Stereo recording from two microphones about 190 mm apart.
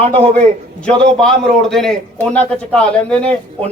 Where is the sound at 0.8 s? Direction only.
5° left (ahead or behind).